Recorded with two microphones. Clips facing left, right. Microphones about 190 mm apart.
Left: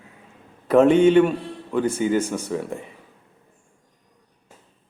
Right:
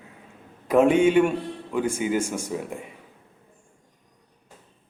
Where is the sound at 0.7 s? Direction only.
10° right (ahead or behind).